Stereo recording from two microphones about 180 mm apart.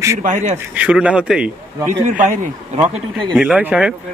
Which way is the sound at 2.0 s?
45° right (ahead or behind).